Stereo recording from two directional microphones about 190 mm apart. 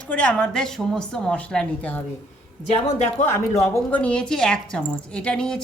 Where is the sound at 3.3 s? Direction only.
15° left (ahead or behind).